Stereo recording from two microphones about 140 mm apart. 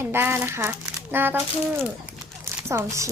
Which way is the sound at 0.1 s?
15° right (ahead or behind).